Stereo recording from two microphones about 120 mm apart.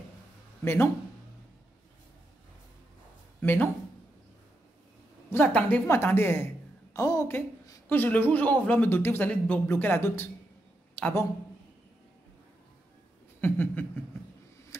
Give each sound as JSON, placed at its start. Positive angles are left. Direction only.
{"t": 3.3, "sound": "speech", "side_deg": 15}
{"t": 5.3, "sound": "speech", "side_deg": 10}
{"t": 6.9, "sound": "a woman's voice", "side_deg": 30}
{"t": 7.9, "sound": "speech", "side_deg": 15}
{"t": 13.4, "sound": "speech", "side_deg": 15}